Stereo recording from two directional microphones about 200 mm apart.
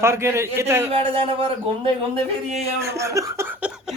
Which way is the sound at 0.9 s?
25° right (ahead or behind).